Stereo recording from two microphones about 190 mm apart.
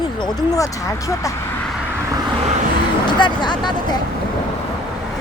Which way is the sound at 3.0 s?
25° left (ahead or behind).